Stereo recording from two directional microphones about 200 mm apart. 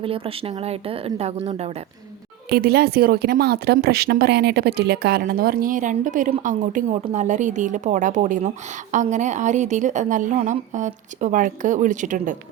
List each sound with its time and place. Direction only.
0.0 s speech: 30° right (ahead or behind)
2.5 s speech: 50° right (ahead or behind)